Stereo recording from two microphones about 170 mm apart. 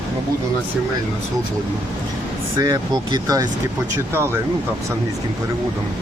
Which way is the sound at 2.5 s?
25° right (ahead or behind).